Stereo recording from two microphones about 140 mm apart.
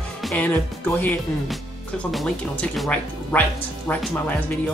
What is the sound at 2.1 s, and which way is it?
Speech, centre (ahead or behind).